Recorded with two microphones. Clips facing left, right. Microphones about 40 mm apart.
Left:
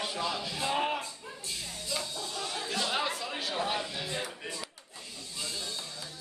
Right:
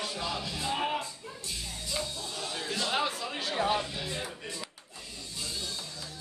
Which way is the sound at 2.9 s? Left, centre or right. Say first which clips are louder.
Right 1 dB; centre.